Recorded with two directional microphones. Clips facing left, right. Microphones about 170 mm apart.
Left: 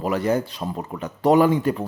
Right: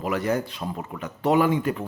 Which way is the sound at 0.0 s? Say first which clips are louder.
Left 3 dB; 30° left (ahead or behind).